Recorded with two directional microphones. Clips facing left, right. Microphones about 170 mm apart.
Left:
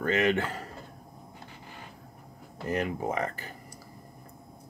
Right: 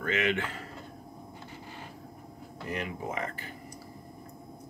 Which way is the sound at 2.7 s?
45° left (ahead or behind).